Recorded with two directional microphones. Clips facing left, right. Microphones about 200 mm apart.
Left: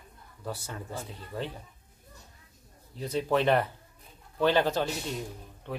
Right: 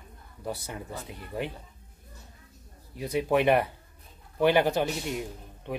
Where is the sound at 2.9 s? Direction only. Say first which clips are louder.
Right 2 dB; 10° right (ahead or behind).